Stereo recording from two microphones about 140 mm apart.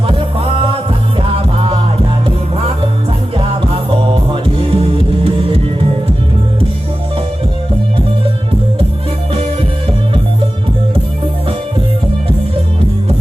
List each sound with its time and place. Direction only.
0.1 s music: 40° right (ahead or behind)